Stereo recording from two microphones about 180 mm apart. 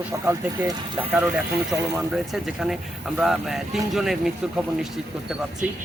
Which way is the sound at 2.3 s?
Centre (ahead or behind).